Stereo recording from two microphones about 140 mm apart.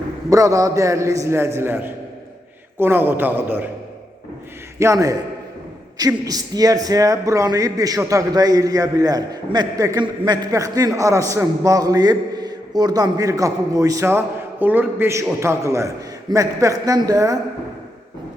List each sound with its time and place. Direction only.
0.3 s a man's voice: 20° right (ahead or behind)
4.8 s a man's voice: 25° right (ahead or behind)